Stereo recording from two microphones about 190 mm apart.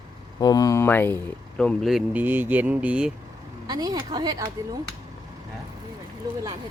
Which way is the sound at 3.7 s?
20° right (ahead or behind).